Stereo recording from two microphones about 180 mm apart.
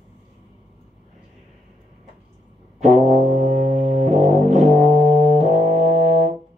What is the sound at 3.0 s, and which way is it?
Music, 40° right (ahead or behind).